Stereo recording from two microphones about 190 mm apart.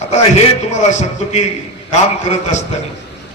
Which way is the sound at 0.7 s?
40° left (ahead or behind).